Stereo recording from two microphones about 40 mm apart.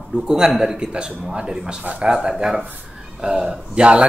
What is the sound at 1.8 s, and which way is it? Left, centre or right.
Speech, right.